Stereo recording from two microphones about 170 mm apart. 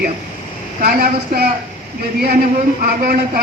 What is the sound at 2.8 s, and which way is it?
Speech, 55° right (ahead or behind).